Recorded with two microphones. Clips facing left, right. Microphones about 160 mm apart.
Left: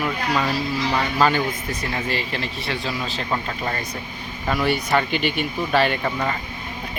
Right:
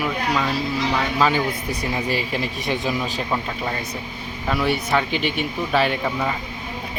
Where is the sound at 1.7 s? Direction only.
15° right (ahead or behind).